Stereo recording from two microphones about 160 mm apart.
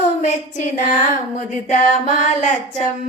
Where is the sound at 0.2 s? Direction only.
45° left (ahead or behind).